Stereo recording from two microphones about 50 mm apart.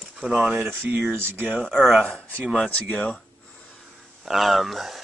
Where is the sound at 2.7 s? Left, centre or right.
Left.